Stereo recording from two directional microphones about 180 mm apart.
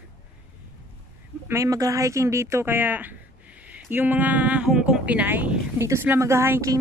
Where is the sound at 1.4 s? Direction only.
15° right (ahead or behind).